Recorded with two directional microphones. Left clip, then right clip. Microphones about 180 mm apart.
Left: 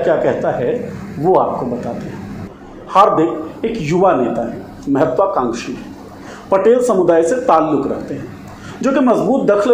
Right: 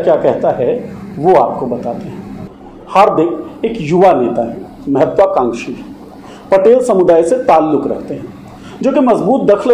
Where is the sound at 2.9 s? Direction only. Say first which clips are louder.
Right 2 dB; centre (ahead or behind).